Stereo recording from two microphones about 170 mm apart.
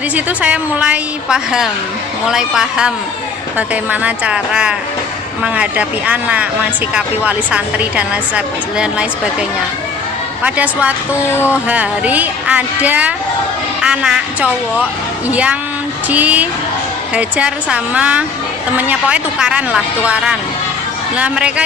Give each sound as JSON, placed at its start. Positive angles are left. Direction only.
{"t": 0.3, "sound": "a woman's voice", "side_deg": -10}
{"t": 10.4, "sound": "speech", "side_deg": -10}
{"t": 11.1, "sound": "speech", "side_deg": 15}
{"t": 11.7, "sound": "a woman's voice", "side_deg": -10}